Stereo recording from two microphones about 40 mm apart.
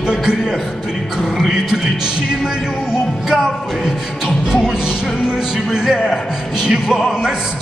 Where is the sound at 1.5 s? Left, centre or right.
Centre.